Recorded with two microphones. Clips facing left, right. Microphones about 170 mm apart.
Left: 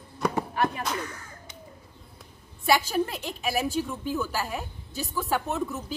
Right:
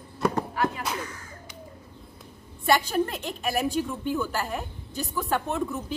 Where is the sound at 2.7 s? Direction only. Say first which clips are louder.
Right 1 dB; 5° left (ahead or behind).